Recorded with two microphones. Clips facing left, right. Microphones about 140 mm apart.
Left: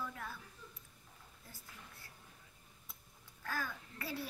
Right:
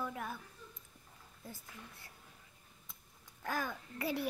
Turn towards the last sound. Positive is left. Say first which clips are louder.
# right 6 dB
turn(degrees=-20)  # may be behind; listen again after turning